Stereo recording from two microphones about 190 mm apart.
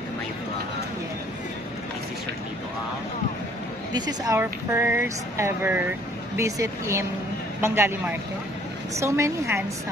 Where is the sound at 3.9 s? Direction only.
20° right (ahead or behind).